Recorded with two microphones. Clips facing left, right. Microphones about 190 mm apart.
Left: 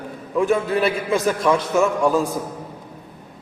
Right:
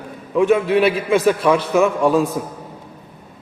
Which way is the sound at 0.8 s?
Centre (ahead or behind).